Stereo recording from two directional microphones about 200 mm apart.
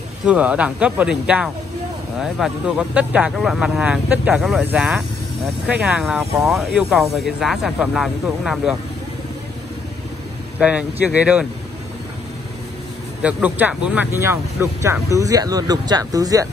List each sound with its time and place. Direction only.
0.2 s speech: 5° right (ahead or behind)
10.6 s speech: 5° right (ahead or behind)
13.2 s speech: 5° right (ahead or behind)